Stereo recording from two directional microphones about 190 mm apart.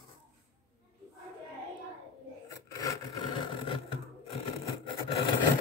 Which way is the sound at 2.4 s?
15° left (ahead or behind).